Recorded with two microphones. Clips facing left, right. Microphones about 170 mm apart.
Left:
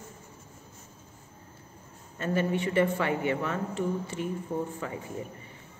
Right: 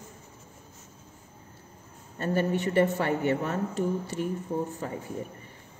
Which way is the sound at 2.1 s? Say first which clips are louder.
Right 1 dB; 40° right (ahead or behind).